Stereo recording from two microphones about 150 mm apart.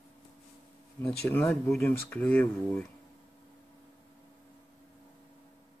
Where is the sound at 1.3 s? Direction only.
15° left (ahead or behind).